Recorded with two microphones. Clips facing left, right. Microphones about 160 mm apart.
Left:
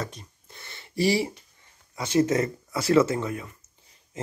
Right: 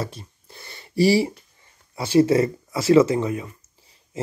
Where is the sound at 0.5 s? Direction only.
35° right (ahead or behind).